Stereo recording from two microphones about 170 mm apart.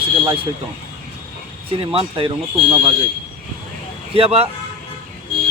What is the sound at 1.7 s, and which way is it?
Speech, 35° right (ahead or behind).